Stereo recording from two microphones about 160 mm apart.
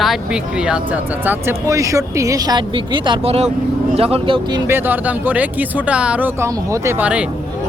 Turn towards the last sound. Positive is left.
turn(degrees=-10)  # may be behind; listen again after turning